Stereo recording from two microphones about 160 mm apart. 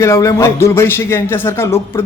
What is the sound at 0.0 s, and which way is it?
A man's voice, 20° left (ahead or behind).